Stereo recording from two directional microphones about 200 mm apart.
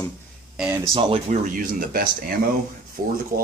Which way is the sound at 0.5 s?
5° right (ahead or behind).